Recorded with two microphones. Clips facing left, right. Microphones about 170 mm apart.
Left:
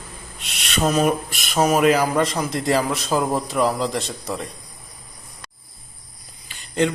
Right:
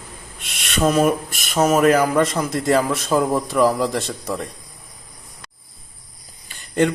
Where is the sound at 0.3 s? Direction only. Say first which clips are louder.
Right 2 dB; 55° right (ahead or behind).